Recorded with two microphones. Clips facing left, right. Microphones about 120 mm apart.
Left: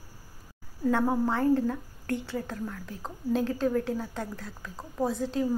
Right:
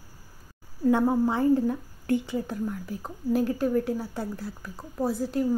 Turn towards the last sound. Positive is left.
turn(degrees=-5)  # may be behind; listen again after turning